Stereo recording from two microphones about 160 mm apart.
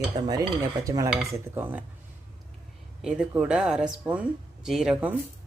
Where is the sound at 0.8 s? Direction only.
20° right (ahead or behind).